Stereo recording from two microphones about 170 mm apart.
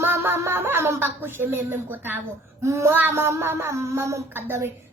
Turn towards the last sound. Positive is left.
turn(degrees=-15)  # may be behind; listen again after turning